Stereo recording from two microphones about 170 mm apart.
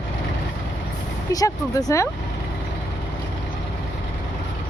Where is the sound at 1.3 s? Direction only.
20° left (ahead or behind).